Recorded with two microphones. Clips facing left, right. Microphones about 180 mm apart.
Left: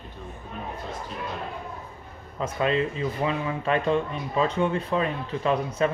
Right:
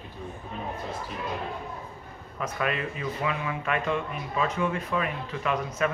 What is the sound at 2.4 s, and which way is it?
A man's voice, 25° left (ahead or behind).